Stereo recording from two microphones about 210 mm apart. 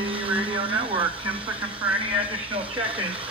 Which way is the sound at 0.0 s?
25° right (ahead or behind).